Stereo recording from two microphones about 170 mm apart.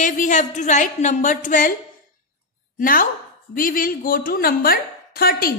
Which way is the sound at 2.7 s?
55° left (ahead or behind).